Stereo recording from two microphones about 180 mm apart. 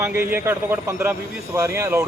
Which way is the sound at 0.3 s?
15° right (ahead or behind).